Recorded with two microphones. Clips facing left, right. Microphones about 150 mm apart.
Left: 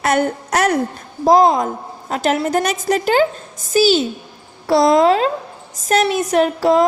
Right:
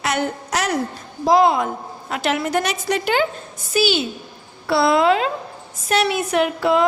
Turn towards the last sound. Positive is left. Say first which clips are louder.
# left 4 dB
turn(degrees=40)  # may be behind; listen again after turning